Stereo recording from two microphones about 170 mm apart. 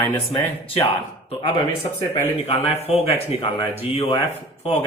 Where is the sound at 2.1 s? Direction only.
35° left (ahead or behind).